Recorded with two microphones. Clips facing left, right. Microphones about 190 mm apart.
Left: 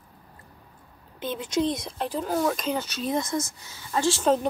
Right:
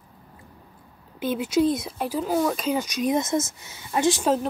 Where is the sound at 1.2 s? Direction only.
10° right (ahead or behind).